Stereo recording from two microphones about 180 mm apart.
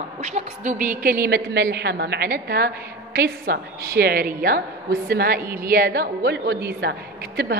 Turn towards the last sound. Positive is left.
turn(degrees=-60)  # may be behind; listen again after turning